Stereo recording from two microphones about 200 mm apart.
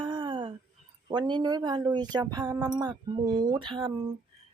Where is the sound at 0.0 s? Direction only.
25° right (ahead or behind).